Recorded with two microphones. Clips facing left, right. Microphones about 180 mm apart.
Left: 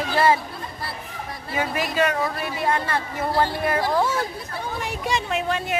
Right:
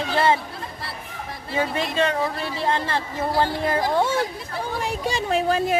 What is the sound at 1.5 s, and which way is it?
A woman's voice, 25° right (ahead or behind).